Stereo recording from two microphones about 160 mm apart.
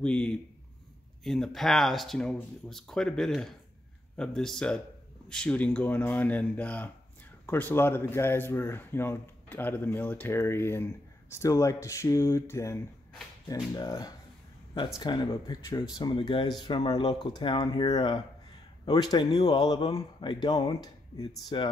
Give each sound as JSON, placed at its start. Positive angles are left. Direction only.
{"t": 0.0, "sound": "speech", "side_deg": 5}